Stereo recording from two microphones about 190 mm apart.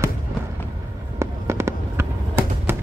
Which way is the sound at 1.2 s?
15° right (ahead or behind).